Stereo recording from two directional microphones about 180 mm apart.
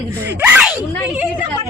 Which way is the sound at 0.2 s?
10° right (ahead or behind).